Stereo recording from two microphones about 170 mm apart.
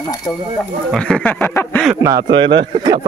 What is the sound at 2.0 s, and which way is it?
Speech, 20° right (ahead or behind).